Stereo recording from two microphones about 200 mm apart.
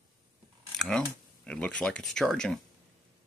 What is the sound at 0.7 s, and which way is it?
Speech, 5° left (ahead or behind).